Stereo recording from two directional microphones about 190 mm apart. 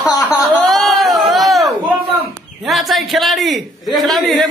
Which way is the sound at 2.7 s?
Centre (ahead or behind).